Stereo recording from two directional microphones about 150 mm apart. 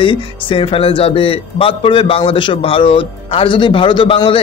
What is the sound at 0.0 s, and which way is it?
Speech, 35° left (ahead or behind).